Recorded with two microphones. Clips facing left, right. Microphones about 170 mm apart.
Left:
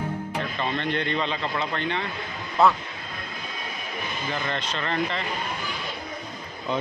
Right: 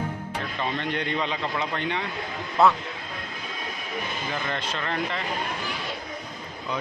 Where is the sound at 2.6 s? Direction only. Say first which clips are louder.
Even; centre (ahead or behind).